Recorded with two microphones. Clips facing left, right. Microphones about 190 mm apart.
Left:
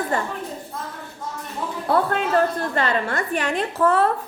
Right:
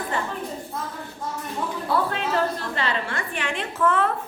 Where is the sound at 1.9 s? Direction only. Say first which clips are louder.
Left 5 dB; 50° left (ahead or behind); by 4.1 s 35° left (ahead or behind).